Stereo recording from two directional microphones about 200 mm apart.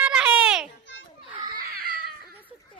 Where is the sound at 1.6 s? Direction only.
50° right (ahead or behind).